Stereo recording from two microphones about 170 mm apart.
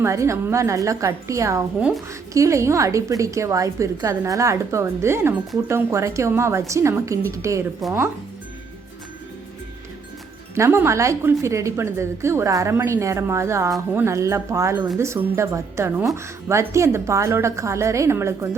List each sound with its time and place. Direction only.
0.0 s a woman's voice: 15° right (ahead or behind)
7.8 s speech: centre (ahead or behind)
10.5 s a woman's voice: 15° right (ahead or behind)